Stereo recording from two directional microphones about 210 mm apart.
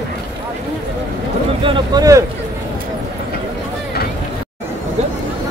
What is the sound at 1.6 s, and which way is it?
Speech, 20° right (ahead or behind).